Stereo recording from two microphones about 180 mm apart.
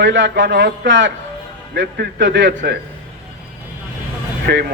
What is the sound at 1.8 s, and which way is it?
A man's voice, 75° right (ahead or behind).